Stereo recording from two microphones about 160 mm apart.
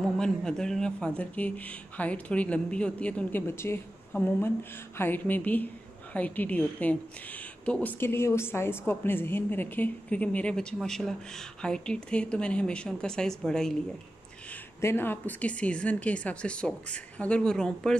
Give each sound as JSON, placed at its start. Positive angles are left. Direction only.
{"t": 0.2, "sound": "a woman's voice", "side_deg": 5}
{"t": 14.8, "sound": "a woman's voice", "side_deg": 15}